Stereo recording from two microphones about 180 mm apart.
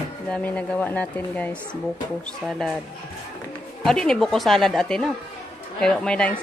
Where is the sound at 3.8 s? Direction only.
Centre (ahead or behind).